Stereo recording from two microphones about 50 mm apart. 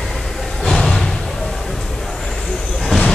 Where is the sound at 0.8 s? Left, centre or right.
Centre.